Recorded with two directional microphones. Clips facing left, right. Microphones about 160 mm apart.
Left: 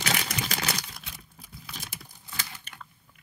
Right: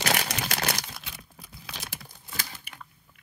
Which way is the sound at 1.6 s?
75° right (ahead or behind).